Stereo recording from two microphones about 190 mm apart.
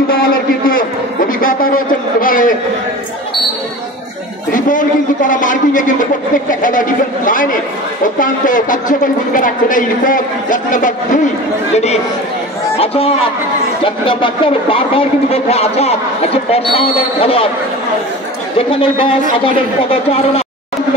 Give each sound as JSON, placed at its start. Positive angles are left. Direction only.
{"t": 0.1, "sound": "a sound", "side_deg": 50}
{"t": 4.5, "sound": "a woman's voice", "side_deg": 45}
{"t": 18.7, "sound": "a woman's voice", "side_deg": 30}